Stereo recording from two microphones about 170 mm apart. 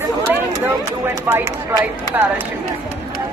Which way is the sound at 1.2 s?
15° right (ahead or behind).